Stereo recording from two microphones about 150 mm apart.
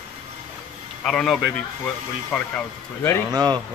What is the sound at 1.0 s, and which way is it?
A man's voice, 5° left (ahead or behind).